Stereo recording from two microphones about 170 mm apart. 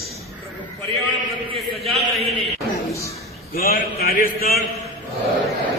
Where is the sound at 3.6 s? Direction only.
60° left (ahead or behind).